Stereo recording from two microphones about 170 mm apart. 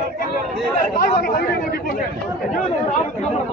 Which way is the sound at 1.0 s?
65° left (ahead or behind).